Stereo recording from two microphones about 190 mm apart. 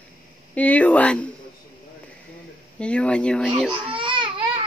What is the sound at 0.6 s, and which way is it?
Speech, 10° left (ahead or behind).